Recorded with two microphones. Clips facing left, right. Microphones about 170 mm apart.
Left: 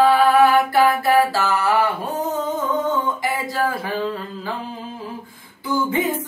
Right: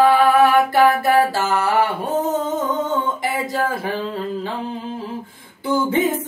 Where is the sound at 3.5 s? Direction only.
25° right (ahead or behind).